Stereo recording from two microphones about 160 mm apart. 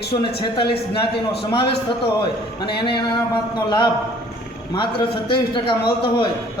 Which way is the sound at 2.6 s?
30° left (ahead or behind).